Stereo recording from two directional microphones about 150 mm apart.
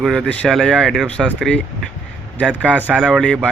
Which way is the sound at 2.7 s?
10° right (ahead or behind).